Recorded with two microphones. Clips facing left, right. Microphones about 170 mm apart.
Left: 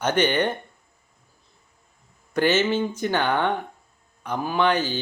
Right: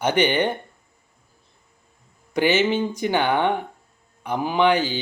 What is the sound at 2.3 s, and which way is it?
A man's voice, 15° right (ahead or behind).